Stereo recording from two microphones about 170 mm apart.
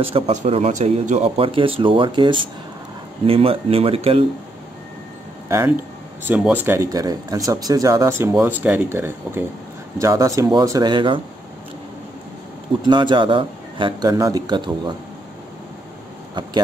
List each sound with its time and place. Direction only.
0.0 s speech: 40° right (ahead or behind)
6.2 s speech: 10° right (ahead or behind); by 11.1 s 25° right (ahead or behind)
12.8 s speech: 25° right (ahead or behind)